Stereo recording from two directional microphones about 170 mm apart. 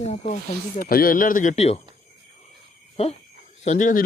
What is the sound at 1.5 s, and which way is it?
Speech, 40° left (ahead or behind).